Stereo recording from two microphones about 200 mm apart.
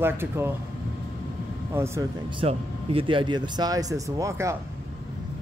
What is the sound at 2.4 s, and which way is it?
Speech, 30° right (ahead or behind).